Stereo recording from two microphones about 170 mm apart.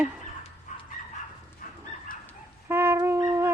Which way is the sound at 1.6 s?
55° left (ahead or behind).